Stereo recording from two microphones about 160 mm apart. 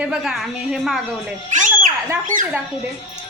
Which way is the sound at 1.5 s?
50° right (ahead or behind).